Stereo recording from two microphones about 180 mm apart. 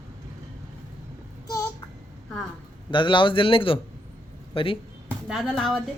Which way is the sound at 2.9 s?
25° left (ahead or behind).